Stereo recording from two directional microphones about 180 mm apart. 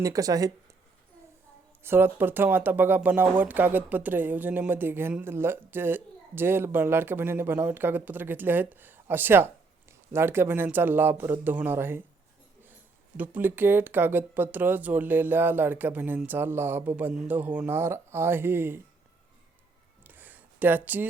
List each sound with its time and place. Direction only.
0.0 s speech: 20° right (ahead or behind)
1.8 s speech: 10° right (ahead or behind)
13.1 s speech: 10° right (ahead or behind)
20.1 s a sound: 10° right (ahead or behind)